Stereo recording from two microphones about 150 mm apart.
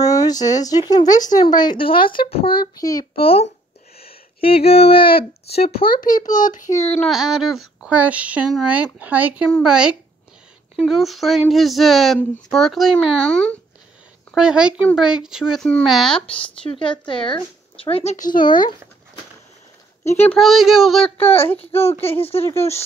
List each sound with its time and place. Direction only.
0.0 s speech: 25° left (ahead or behind)
3.2 s speech: 40° left (ahead or behind)
4.0 s a sound: 40° left (ahead or behind)
4.6 s speech: 40° left (ahead or behind)
5.9 s a child's voice: 65° left (ahead or behind)
7.1 s speech: 5° right (ahead or behind)
14.3 s speech: 5° right (ahead or behind)
16.8 s speech: 30° left (ahead or behind)
18.1 s a child's voice: 65° left (ahead or behind)
20.3 s speech: centre (ahead or behind)
21.2 s speech: 40° left (ahead or behind)
21.5 s a child's voice: 15° left (ahead or behind)
22.2 s speech: 40° left (ahead or behind)